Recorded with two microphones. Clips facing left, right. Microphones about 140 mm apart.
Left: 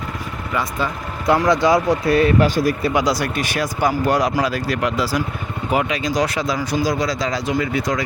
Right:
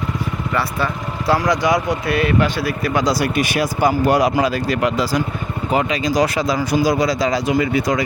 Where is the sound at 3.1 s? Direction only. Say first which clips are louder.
Right 3 dB; 10° right (ahead or behind).